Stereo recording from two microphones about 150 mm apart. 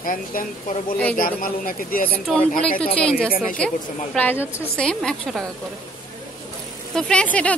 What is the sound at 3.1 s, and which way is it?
Speech, 75° left (ahead or behind).